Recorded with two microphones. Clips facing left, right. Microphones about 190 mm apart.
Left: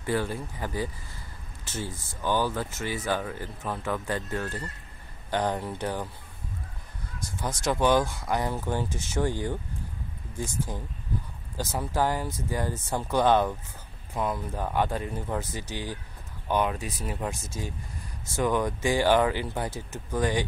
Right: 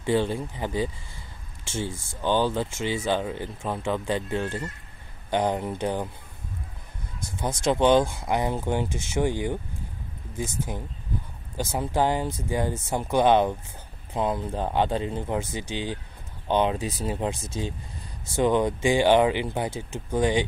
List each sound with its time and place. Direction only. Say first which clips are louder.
0.0 s speech: right 5 dB; 25° right (ahead or behind)
7.3 s speech: right 4 dB; 25° right (ahead or behind)